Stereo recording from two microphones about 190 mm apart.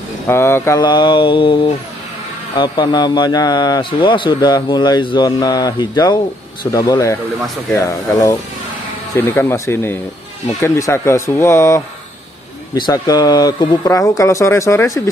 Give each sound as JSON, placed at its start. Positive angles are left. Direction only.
{"t": 0.3, "sound": "a man's voice", "side_deg": 15}